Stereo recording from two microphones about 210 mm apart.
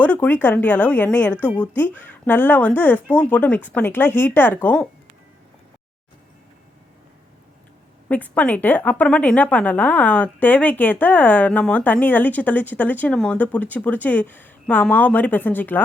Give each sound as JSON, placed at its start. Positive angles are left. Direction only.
{"t": 0.0, "sound": "a sound", "side_deg": 5}
{"t": 0.4, "sound": "a woman's voice", "side_deg": 10}
{"t": 8.0, "sound": "a woman's voice", "side_deg": 10}